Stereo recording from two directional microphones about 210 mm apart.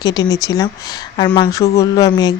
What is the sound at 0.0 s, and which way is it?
Speech, 20° left (ahead or behind).